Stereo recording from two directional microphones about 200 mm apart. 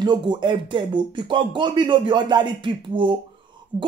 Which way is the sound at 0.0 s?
20° right (ahead or behind).